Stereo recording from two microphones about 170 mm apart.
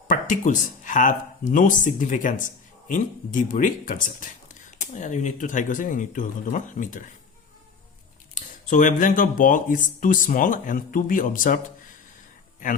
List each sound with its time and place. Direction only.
0.1 s speech: 50° left (ahead or behind)
8.4 s speech: 50° left (ahead or behind)